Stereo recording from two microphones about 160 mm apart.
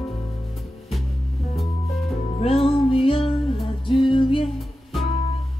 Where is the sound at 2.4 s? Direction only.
35° left (ahead or behind).